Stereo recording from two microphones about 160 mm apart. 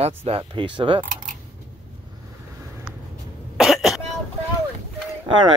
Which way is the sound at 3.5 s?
Centre (ahead or behind).